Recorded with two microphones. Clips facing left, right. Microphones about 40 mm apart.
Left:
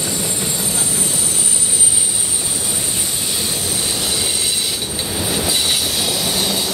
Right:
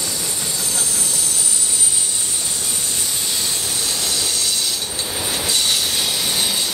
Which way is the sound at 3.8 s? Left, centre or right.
Centre.